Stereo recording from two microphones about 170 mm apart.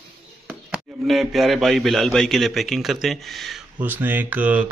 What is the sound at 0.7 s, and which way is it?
Speech, centre (ahead or behind).